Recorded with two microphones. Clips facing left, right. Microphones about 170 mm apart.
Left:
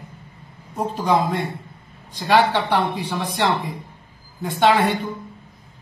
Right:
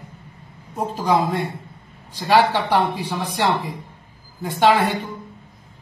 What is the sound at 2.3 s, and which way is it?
Speech, 5° right (ahead or behind).